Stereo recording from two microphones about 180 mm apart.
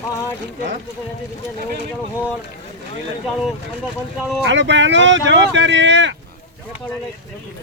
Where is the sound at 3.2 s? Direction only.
Centre (ahead or behind).